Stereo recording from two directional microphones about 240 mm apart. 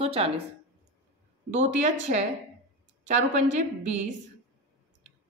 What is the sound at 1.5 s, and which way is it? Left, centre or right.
Speech, right.